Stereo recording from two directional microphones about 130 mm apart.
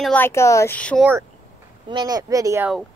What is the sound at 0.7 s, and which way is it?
Speech, 10° left (ahead or behind).